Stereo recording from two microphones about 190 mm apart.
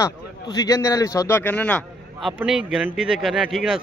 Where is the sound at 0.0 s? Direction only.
20° left (ahead or behind).